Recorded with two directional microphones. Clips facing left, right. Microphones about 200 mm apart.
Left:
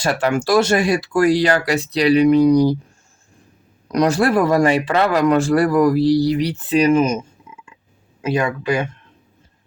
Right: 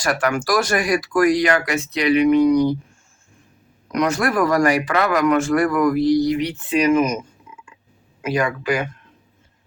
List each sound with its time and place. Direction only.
0.0 s speech: 25° left (ahead or behind)
3.9 s speech: 35° left (ahead or behind)
8.2 s speech: 25° left (ahead or behind)